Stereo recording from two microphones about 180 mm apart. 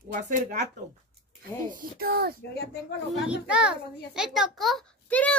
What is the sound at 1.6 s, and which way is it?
Speech, 50° right (ahead or behind).